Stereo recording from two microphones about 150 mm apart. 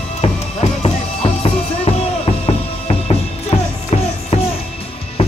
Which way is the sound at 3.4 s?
40° left (ahead or behind).